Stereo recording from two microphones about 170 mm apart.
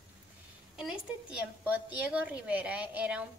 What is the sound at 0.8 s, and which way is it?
A woman's voice, 5° right (ahead or behind).